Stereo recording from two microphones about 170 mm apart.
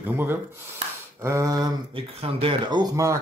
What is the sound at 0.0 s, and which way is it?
Speech, 15° right (ahead or behind).